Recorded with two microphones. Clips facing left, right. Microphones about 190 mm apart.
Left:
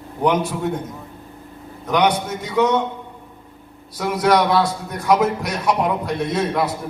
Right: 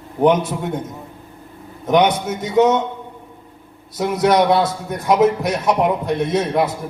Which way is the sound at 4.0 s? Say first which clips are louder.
Right 2 dB; 20° right (ahead or behind).